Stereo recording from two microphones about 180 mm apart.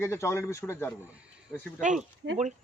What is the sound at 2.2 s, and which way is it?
Speech, 80° right.